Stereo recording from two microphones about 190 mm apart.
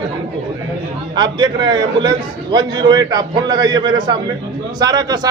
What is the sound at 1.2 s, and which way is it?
A man's voice, 25° right (ahead or behind).